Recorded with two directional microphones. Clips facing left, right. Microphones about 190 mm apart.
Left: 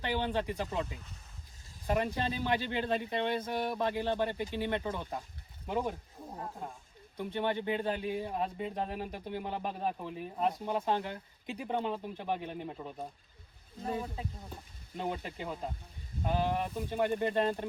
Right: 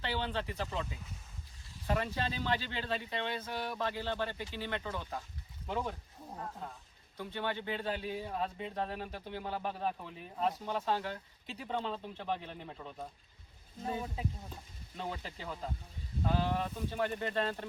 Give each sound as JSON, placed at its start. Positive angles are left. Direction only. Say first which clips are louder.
{"t": 0.0, "sound": "speech", "louder": "left 4 dB", "side_deg": 15}
{"t": 1.9, "sound": "speech", "louder": "left 3 dB", "side_deg": 15}
{"t": 2.9, "sound": "speech", "louder": "left 4 dB", "side_deg": 50}
{"t": 3.6, "sound": "speech", "louder": "left 5 dB", "side_deg": 15}
{"t": 13.8, "sound": "speech", "louder": "left 2 dB", "side_deg": 0}
{"t": 14.9, "sound": "speech", "louder": "left 5 dB", "side_deg": 15}